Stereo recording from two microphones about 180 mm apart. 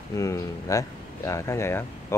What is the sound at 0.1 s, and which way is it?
Speech, 15° left (ahead or behind).